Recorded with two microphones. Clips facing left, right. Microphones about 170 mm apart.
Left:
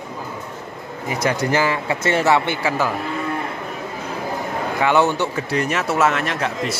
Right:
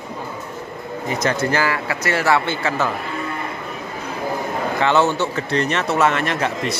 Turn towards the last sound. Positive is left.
turn(degrees=0)  # may be behind; listen again after turning